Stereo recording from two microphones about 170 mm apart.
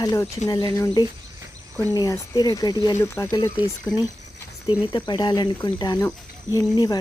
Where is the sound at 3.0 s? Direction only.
15° left (ahead or behind).